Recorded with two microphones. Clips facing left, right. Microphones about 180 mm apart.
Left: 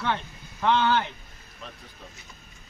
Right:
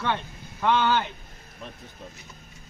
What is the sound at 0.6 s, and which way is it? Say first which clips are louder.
Speech: even; 10° right (ahead or behind).